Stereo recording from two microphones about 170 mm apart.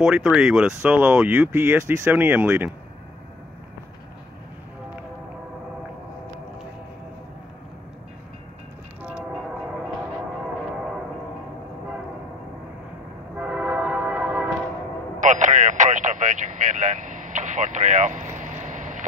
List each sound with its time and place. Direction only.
0.0 s speech: 5° right (ahead or behind)
9.0 s train: 5° right (ahead or behind)
13.4 s music: 5° right (ahead or behind)
15.1 s vehicle: 45° right (ahead or behind)